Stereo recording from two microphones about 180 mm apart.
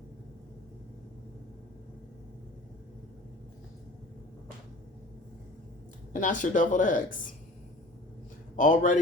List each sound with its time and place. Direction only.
6.1 s speech: 45° left (ahead or behind)
8.5 s speech: 45° left (ahead or behind)